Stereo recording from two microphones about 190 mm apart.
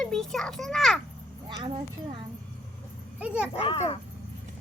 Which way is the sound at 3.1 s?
5° right (ahead or behind).